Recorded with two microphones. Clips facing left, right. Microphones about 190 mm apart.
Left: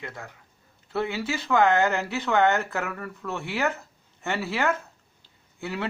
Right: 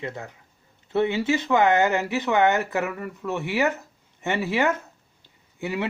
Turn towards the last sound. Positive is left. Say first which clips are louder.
# right 3 dB
turn(degrees=-15)  # may be behind; listen again after turning